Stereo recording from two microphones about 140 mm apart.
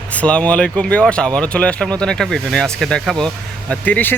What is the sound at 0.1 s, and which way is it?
A man's voice, 10° left (ahead or behind).